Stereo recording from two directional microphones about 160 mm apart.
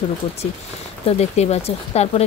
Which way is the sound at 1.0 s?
40° left (ahead or behind).